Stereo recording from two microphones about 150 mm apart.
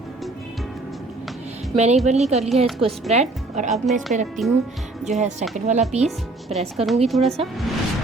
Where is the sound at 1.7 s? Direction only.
45° right (ahead or behind).